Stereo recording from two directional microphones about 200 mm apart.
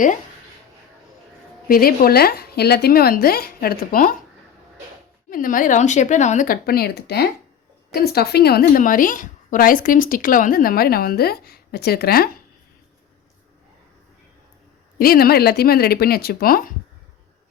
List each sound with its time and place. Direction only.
1.6 s a woman's voice: 45° left (ahead or behind)
5.3 s a woman's voice: 45° left (ahead or behind)
14.9 s a woman's voice: 50° left (ahead or behind)